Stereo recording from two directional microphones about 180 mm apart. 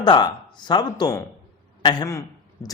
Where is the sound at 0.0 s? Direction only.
25° left (ahead or behind).